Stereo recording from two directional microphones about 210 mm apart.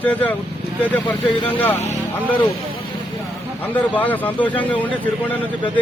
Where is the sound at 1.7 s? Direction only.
30° left (ahead or behind).